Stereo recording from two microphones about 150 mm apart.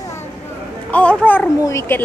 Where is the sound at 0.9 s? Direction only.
10° left (ahead or behind).